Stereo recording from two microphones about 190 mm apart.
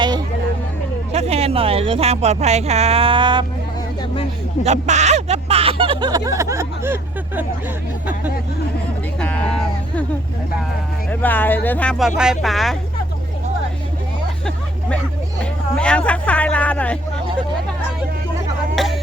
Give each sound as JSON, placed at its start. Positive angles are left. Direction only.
{"t": 1.1, "sound": "speech", "side_deg": -35}
{"t": 4.6, "sound": "speech", "side_deg": -35}
{"t": 9.1, "sound": "a sound", "side_deg": 5}
{"t": 11.1, "sound": "speech", "side_deg": 10}
{"t": 15.4, "sound": "speech", "side_deg": 5}
{"t": 18.8, "sound": "a sound", "side_deg": 0}